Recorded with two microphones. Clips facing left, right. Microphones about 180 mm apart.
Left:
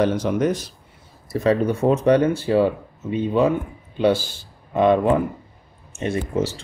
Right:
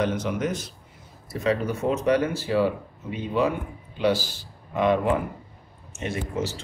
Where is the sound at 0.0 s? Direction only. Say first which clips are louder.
Left 6 dB; 35° left (ahead or behind).